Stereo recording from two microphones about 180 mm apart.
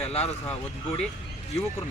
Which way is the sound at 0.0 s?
35° left (ahead or behind).